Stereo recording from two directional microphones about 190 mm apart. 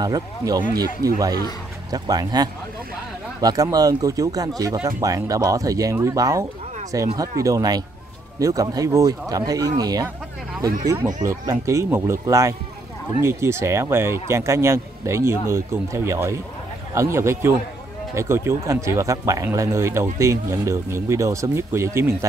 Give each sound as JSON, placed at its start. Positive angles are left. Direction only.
{"t": 0.0, "sound": "speech", "side_deg": -20}
{"t": 11.2, "sound": "speech", "side_deg": -15}